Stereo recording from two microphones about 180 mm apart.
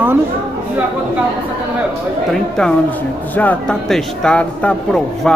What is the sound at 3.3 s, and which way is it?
A man's voice, 10° left (ahead or behind).